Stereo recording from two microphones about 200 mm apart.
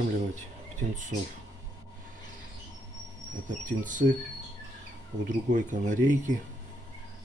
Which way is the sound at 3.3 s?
40° right (ahead or behind).